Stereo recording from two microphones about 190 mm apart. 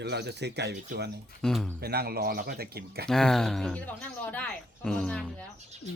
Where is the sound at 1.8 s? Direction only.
55° right (ahead or behind).